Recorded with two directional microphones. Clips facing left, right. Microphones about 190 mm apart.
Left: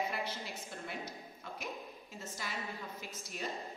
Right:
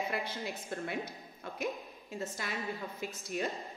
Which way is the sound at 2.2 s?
60° right (ahead or behind).